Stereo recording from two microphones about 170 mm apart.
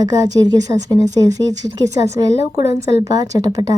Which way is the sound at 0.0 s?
25° right (ahead or behind).